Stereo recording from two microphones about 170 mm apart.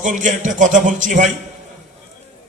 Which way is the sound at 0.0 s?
45° right (ahead or behind).